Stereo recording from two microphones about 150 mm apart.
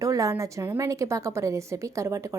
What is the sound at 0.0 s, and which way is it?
A woman's voice, 20° right (ahead or behind).